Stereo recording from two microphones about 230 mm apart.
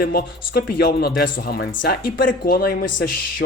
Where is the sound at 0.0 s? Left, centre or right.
Left.